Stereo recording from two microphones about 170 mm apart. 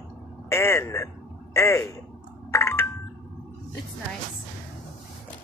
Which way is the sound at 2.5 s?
15° left (ahead or behind).